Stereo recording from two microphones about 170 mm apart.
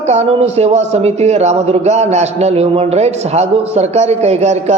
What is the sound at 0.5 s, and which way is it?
A man's voice, 40° right (ahead or behind).